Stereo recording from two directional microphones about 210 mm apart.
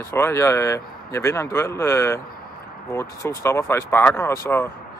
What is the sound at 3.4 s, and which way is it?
Speech, 10° left (ahead or behind).